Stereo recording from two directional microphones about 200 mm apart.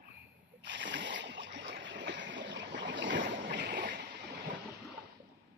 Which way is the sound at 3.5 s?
45° right (ahead or behind).